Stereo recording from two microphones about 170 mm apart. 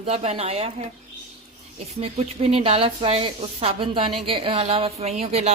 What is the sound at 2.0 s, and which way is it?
A woman's voice, 35° right (ahead or behind).